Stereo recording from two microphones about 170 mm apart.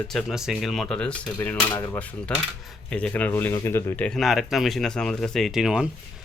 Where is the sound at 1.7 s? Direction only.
20° left (ahead or behind).